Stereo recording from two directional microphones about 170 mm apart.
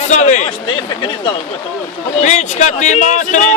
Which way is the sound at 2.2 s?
45° left (ahead or behind).